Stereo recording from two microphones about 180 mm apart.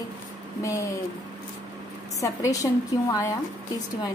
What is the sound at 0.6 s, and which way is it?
Speech, 15° left (ahead or behind).